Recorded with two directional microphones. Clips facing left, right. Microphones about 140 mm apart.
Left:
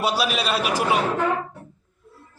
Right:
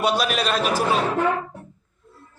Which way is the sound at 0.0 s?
5° left (ahead or behind).